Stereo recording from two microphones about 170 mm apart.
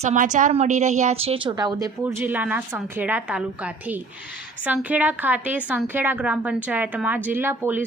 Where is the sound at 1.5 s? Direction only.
20° right (ahead or behind).